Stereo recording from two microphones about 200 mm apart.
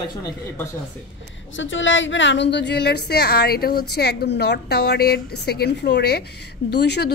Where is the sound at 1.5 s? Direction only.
70° left (ahead or behind).